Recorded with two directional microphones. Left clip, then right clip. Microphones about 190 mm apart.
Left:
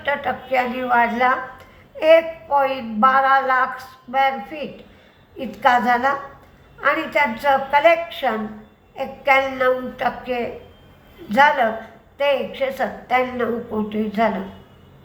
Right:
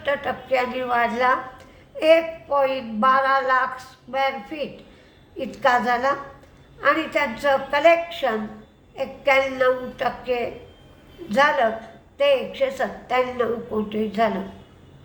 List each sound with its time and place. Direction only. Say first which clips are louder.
0.0 s a woman's voice: left 2 dB; 15° right (ahead or behind)